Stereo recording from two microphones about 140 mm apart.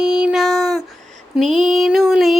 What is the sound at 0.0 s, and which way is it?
Child singing, 5° right (ahead or behind).